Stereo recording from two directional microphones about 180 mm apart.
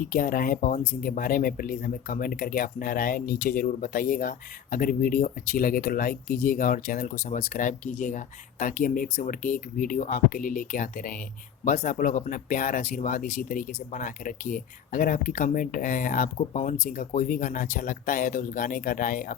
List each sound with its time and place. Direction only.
0.0 s speech: 50° left (ahead or behind)